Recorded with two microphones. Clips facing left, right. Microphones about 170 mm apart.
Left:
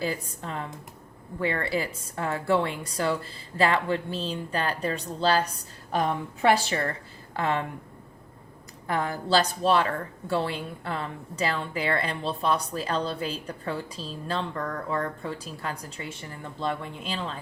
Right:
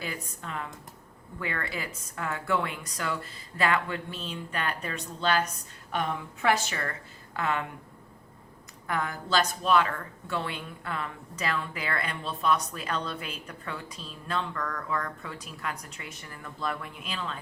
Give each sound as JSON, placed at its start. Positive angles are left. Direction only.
{"t": 0.0, "sound": "a woman's voice", "side_deg": 30}
{"t": 8.9, "sound": "a woman's voice", "side_deg": 35}